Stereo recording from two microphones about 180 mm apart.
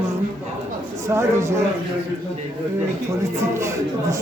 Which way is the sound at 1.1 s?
15° right (ahead or behind).